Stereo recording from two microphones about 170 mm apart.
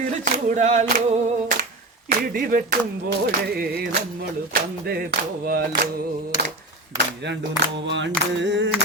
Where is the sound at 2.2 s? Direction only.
60° right (ahead or behind).